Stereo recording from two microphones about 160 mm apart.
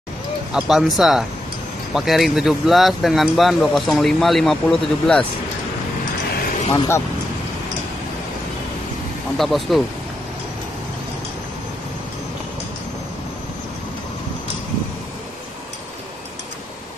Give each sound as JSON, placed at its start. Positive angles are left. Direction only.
{"t": 0.5, "sound": "speech", "side_deg": -5}
{"t": 6.7, "sound": "speech", "side_deg": 20}
{"t": 9.4, "sound": "speech", "side_deg": 0}